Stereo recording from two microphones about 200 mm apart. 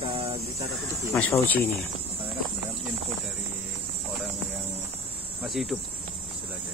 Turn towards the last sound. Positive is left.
turn(degrees=0)  # may be behind; listen again after turning